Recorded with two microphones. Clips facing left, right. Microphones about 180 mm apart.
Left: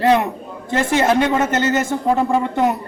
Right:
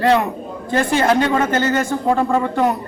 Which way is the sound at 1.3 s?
20° left (ahead or behind).